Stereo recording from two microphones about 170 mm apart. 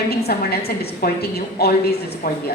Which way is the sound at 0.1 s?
65° left (ahead or behind).